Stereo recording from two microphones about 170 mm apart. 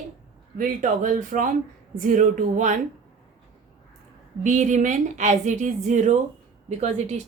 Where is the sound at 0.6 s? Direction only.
50° right (ahead or behind).